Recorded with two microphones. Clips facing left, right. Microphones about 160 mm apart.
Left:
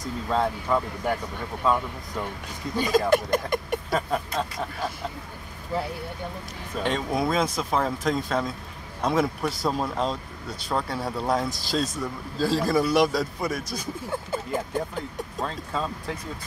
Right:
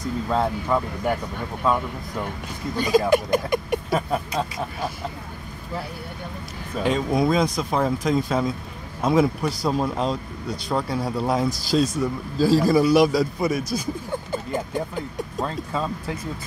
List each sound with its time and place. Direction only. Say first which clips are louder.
0.0 s speech: right 2 dB; centre (ahead or behind)
6.8 s speech: right 4 dB; 5° right (ahead or behind)